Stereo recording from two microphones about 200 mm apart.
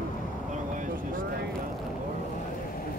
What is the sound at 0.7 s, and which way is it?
Vehicle, 40° right (ahead or behind).